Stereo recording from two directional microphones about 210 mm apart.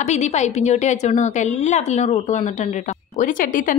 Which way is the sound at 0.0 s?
35° left (ahead or behind).